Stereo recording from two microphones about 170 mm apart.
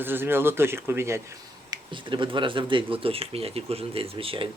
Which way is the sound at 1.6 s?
30° right (ahead or behind).